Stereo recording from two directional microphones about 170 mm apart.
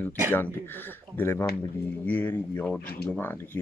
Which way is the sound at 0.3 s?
10° left (ahead or behind).